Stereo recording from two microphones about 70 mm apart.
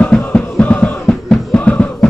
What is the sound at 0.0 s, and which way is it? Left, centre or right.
Music, centre.